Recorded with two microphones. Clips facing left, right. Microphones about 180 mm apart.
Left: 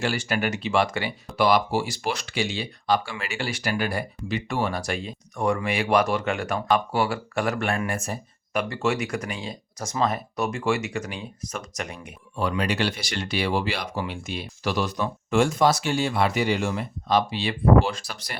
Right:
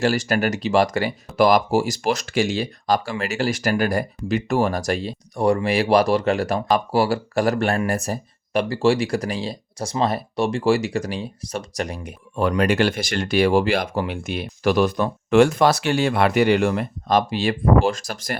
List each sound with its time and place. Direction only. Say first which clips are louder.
0.0 s speech: right 6 dB; 40° right (ahead or behind)
12.4 s speech: right 6 dB; 50° right (ahead or behind)